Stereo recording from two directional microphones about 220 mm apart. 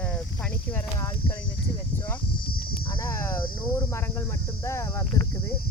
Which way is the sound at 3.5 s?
10° left (ahead or behind).